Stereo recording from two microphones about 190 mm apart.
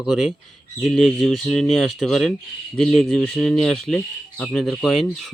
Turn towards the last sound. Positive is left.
turn(degrees=0)  # may be behind; listen again after turning